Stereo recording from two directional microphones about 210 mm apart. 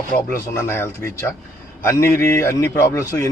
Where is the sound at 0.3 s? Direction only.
10° left (ahead or behind).